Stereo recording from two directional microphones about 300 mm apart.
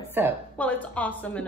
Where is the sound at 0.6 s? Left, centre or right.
Centre.